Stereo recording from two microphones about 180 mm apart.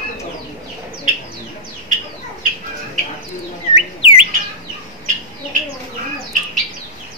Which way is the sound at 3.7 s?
30° left (ahead or behind).